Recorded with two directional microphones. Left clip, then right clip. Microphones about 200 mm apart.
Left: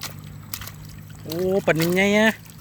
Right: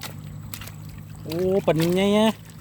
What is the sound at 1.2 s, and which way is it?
Speech, centre (ahead or behind).